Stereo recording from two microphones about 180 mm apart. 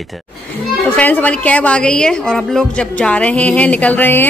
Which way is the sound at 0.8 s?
10° left (ahead or behind).